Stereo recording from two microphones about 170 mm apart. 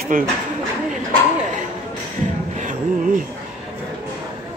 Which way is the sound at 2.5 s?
50° right (ahead or behind).